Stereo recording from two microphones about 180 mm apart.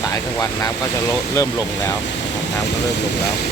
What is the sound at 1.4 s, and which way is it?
Speech, 15° left (ahead or behind).